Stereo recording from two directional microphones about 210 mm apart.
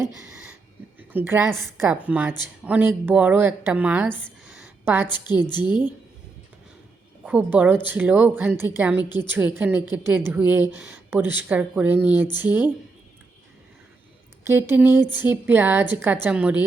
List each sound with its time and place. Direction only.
0.9 s a woman's voice: 10° right (ahead or behind)
5.0 s a woman's voice: 20° left (ahead or behind)
7.3 s speech: 5° right (ahead or behind)
9.0 s a woman's voice: 20° left (ahead or behind)
9.3 s speech: 10° right (ahead or behind)
14.4 s speech: 10° right (ahead or behind)